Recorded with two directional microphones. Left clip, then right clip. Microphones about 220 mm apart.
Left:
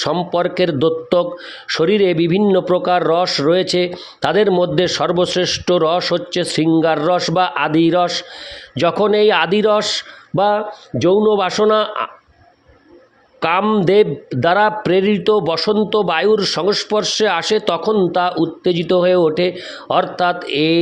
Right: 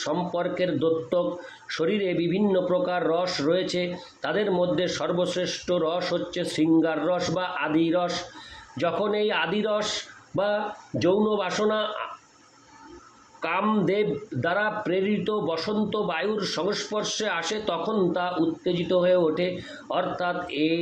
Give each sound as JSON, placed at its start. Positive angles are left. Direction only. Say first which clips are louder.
{"t": 0.0, "sound": "a man's voice", "louder": "left 10 dB", "side_deg": 45}
{"t": 13.4, "sound": "a man's voice", "louder": "left 10 dB", "side_deg": 45}